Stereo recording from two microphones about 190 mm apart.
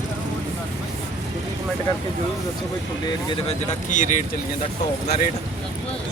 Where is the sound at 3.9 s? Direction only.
40° left (ahead or behind).